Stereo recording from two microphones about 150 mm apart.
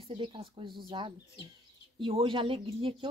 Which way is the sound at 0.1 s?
35° right (ahead or behind).